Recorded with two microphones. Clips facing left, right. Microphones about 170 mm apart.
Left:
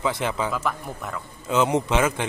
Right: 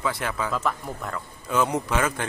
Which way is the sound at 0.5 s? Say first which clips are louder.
Even; 5° left (ahead or behind).